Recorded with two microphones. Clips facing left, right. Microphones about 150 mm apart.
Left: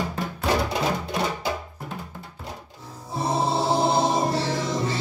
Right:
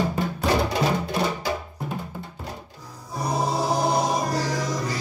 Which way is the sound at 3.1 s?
25° left (ahead or behind).